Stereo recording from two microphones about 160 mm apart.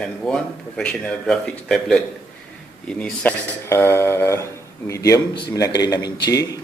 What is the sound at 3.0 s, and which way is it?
A man's voice, 10° left (ahead or behind).